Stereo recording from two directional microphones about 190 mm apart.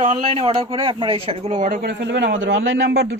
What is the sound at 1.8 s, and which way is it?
Speech, 65° right (ahead or behind).